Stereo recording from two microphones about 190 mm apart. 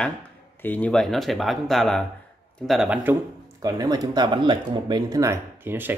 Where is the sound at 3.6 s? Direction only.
20° right (ahead or behind).